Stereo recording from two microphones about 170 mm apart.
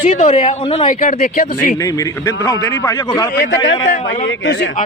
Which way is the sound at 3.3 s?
90° left.